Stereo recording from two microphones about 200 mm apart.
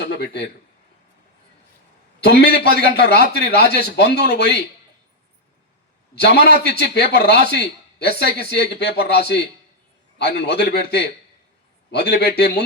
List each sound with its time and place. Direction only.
0.0 s a sound: 55° left (ahead or behind)
2.2 s a man's voice: 55° left (ahead or behind)
6.1 s a man's voice: 55° left (ahead or behind)